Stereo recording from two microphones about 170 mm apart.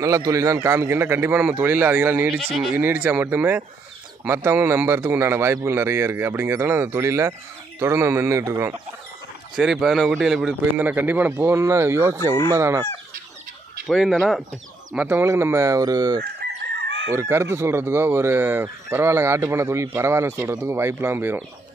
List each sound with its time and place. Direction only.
0.0 s speech: 20° right (ahead or behind)
2.2 s speech: centre (ahead or behind)
2.8 s speech: 10° right (ahead or behind)
9.6 s speech: centre (ahead or behind)
13.8 s speech: centre (ahead or behind)
15.0 s speech: 10° right (ahead or behind)
16.2 s chicken: 75° right (ahead or behind)
17.1 s speech: 15° right (ahead or behind)